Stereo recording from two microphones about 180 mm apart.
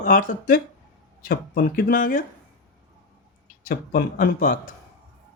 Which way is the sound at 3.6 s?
55° left (ahead or behind).